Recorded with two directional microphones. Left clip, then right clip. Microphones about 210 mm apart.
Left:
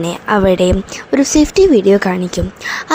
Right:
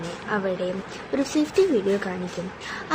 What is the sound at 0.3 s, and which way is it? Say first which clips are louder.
A woman's voice: left 14 dB; 50° left (ahead or behind).